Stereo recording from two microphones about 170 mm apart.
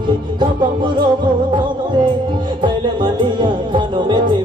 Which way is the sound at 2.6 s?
30° right (ahead or behind).